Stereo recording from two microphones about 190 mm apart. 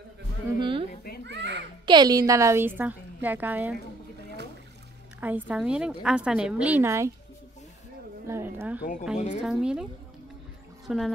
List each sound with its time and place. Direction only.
0.6 s a sound: 25° right (ahead or behind)
1.2 s a sound: 65° right (ahead or behind)
1.9 s a woman's voice: 20° right (ahead or behind)
5.2 s a woman's voice: 10° right (ahead or behind)
8.3 s a woman's voice: 10° right (ahead or behind)
10.9 s speech: centre (ahead or behind)